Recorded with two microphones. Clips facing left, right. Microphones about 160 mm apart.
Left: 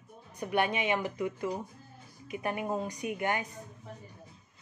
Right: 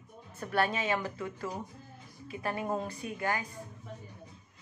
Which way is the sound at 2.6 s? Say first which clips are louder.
Left 1 dB; 5° left (ahead or behind).